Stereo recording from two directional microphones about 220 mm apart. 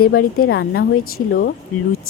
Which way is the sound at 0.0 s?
40° left (ahead or behind).